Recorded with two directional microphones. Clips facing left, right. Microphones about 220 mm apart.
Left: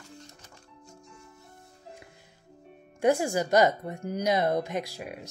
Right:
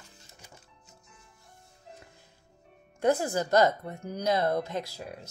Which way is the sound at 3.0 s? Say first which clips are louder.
Left 2 dB; 15° left (ahead or behind).